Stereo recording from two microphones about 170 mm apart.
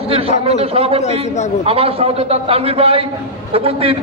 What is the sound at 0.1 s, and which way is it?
A man's voice, 35° right (ahead or behind).